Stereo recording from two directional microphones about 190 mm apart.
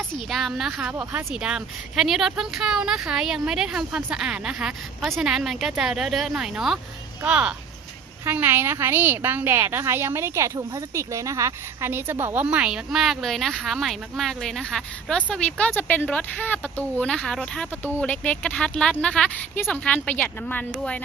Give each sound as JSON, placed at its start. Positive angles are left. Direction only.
{"t": 0.3, "sound": "a woman's voice", "side_deg": 0}